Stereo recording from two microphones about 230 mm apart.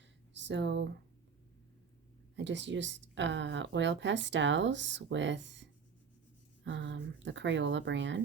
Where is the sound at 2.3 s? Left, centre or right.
Right.